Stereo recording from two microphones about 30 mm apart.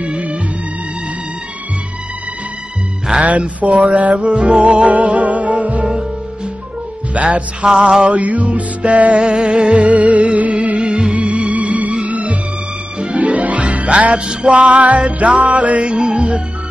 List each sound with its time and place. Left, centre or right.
0.0 s music: right
3.3 s music: right
4.9 s music: right
7.2 s music: right
7.6 s mantra: right
8.1 s music: right
9.3 s music: right
10.8 s music: right
11.5 s music: right
13.6 s music: right